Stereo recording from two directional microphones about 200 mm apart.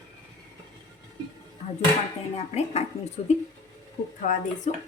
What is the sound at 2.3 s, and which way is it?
Speech, 30° left (ahead or behind).